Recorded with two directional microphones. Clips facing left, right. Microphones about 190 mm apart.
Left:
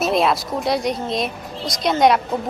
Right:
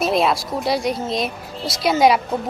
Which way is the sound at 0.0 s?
Centre (ahead or behind).